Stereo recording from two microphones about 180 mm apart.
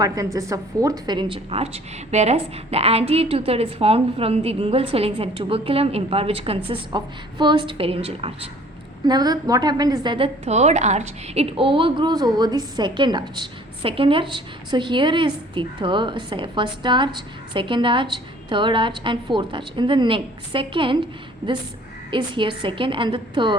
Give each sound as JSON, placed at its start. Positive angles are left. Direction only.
{"t": 0.0, "sound": "a woman's voice", "side_deg": -20}
{"t": 22.1, "sound": "a woman's voice", "side_deg": -30}